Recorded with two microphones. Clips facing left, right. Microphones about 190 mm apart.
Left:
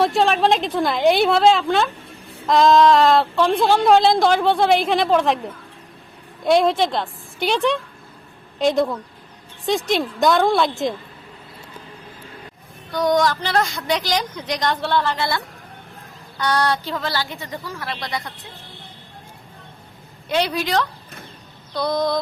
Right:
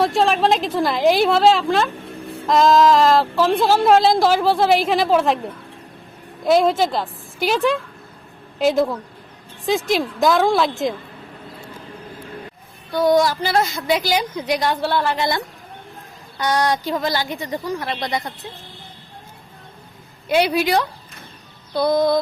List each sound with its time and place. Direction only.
0.0 s a woman's voice: centre (ahead or behind)
6.4 s a woman's voice: centre (ahead or behind)
12.9 s a woman's voice: 5° right (ahead or behind)
20.2 s a woman's voice: 10° right (ahead or behind)